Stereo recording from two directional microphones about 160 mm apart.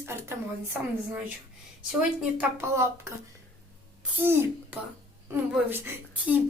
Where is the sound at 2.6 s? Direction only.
15° right (ahead or behind).